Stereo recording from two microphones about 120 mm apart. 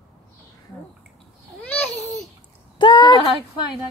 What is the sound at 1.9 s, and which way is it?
Babbling, 65° left (ahead or behind).